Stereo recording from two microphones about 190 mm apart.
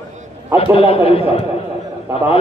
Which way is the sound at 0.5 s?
30° left (ahead or behind).